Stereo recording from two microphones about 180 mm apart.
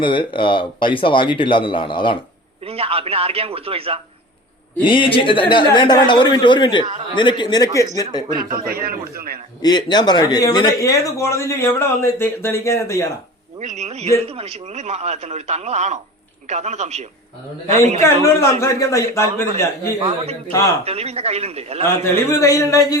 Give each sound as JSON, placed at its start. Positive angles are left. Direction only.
{"t": 0.0, "sound": "speech", "side_deg": 30}
{"t": 2.6, "sound": "a man's voice", "side_deg": -35}
{"t": 4.8, "sound": "speech", "side_deg": 30}
{"t": 8.4, "sound": "a man's voice", "side_deg": -55}
{"t": 9.6, "sound": "speech", "side_deg": 20}
{"t": 13.6, "sound": "a man's voice", "side_deg": -40}
{"t": 18.3, "sound": "speech", "side_deg": 15}
{"t": 20.8, "sound": "a man's voice", "side_deg": -35}
{"t": 22.1, "sound": "speech", "side_deg": 15}